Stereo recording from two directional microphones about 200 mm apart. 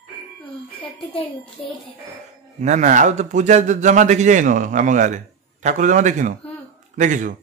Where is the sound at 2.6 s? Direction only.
35° right (ahead or behind).